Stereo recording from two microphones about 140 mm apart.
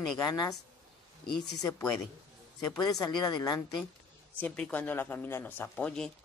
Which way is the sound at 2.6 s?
30° left (ahead or behind).